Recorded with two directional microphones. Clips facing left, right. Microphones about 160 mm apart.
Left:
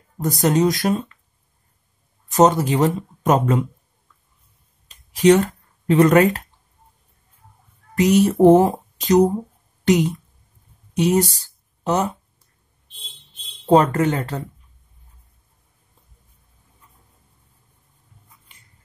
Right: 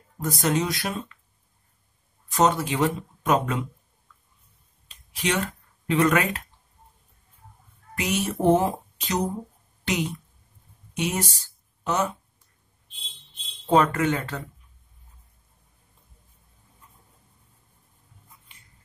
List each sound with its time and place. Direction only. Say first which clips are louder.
0.2 s speech: left 7 dB; 40° left (ahead or behind)
2.3 s speech: left 6 dB; 40° left (ahead or behind)
4.8 s a sound: left 14 dB; 40° left (ahead or behind)
7.9 s speech: left 11 dB; 40° left (ahead or behind)
13.7 s speech: left 5 dB; 35° left (ahead or behind)